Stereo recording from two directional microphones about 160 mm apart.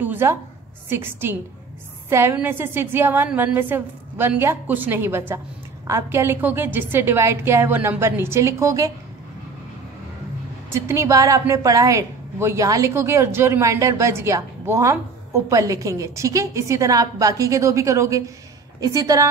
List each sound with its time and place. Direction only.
0.0 s a sound: 15° right (ahead or behind)
0.8 s a woman's voice: 15° right (ahead or behind)
10.7 s a woman's voice: 15° right (ahead or behind)